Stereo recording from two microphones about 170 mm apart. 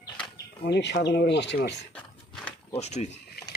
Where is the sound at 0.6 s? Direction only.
80° left.